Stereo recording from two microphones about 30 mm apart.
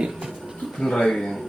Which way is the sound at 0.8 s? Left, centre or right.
Centre.